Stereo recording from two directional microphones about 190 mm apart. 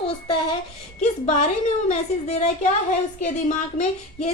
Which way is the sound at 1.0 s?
35° left (ahead or behind).